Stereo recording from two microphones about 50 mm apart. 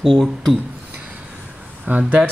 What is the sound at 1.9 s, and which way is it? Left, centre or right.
Speech, right.